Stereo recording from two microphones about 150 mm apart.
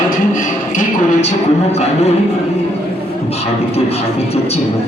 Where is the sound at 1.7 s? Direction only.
45° left (ahead or behind).